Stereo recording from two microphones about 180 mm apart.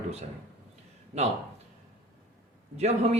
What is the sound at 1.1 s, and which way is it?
Speech, 35° right (ahead or behind).